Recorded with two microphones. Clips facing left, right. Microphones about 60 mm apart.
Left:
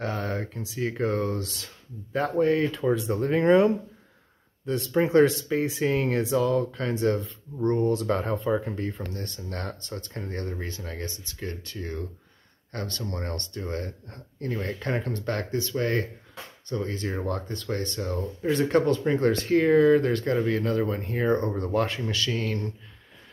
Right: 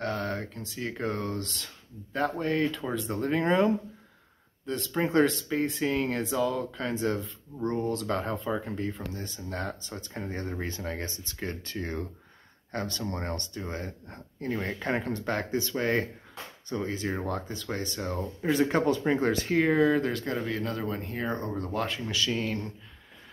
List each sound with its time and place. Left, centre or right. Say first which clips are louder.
0.0 s speech: left 1 dB; centre
22.1 s speech: left 1 dB; centre